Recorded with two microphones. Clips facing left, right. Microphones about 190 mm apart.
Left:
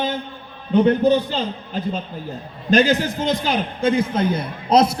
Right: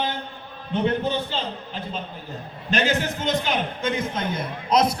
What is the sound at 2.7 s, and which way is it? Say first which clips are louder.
A man's voice: left 7 dB; 35° left (ahead or behind).